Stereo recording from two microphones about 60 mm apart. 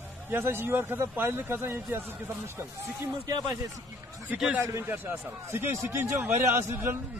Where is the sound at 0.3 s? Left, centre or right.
Right.